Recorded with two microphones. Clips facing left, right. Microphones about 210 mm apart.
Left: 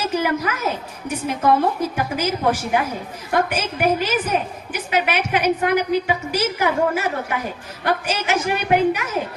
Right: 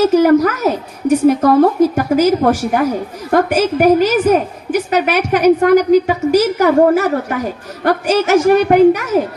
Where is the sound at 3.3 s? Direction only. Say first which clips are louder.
Right 8 dB; 45° right (ahead or behind).